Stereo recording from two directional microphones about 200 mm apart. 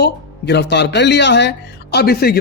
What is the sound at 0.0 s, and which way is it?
Speech, 55° left (ahead or behind).